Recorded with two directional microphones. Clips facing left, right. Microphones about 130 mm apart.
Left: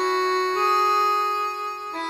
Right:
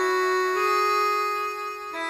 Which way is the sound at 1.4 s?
25° left (ahead or behind).